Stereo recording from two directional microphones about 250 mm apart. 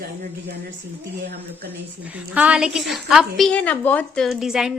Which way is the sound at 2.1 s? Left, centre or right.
Centre.